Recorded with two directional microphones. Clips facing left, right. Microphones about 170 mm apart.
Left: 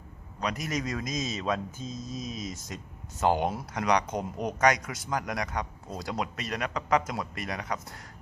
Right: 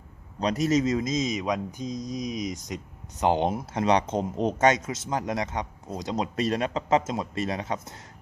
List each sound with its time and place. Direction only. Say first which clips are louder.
0.3 s speech: right 8 dB; 30° right (ahead or behind)